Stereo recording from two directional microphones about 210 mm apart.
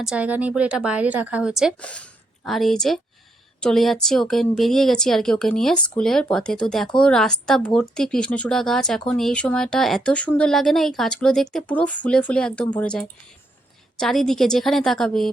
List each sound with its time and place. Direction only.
0.0 s speech: 5° right (ahead or behind)